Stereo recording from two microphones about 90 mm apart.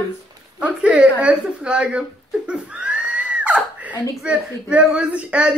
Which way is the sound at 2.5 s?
10° right (ahead or behind).